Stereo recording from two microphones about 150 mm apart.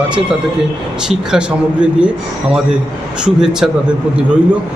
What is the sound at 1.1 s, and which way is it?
Speech, 5° right (ahead or behind).